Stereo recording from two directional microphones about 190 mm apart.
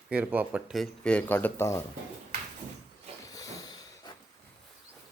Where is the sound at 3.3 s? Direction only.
20° left (ahead or behind).